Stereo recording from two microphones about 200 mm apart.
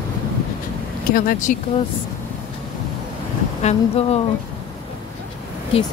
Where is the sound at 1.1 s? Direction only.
40° left (ahead or behind).